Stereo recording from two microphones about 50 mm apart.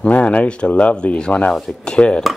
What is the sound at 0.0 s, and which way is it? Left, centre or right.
Speech, left.